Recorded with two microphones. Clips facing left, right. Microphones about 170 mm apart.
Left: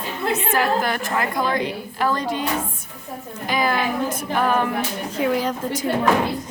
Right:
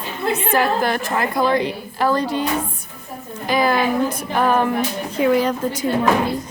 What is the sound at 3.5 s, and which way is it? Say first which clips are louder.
Speech: right 4 dB; 35° right (ahead or behind).